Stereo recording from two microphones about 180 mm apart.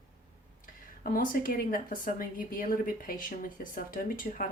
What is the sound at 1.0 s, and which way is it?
A woman's voice, 50° left (ahead or behind).